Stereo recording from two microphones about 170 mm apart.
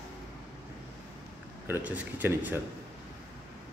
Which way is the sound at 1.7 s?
10° right (ahead or behind).